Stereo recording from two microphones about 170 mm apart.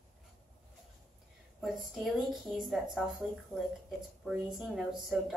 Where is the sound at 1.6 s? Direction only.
5° right (ahead or behind).